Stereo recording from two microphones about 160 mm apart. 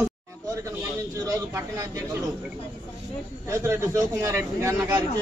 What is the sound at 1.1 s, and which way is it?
Speech, 20° right (ahead or behind).